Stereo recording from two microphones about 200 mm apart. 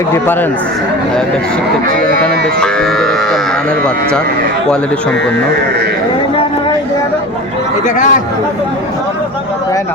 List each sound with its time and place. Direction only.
2.2 s speech: 5° left (ahead or behind)
7.9 s speech: 40° left (ahead or behind)